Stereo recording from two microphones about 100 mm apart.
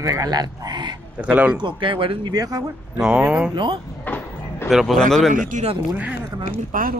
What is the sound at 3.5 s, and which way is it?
Speech, 50° right (ahead or behind).